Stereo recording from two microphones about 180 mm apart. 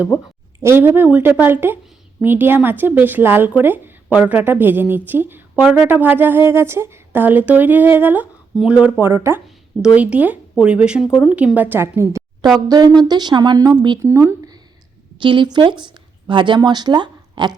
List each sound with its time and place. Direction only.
0.6 s a woman's voice: 10° right (ahead or behind)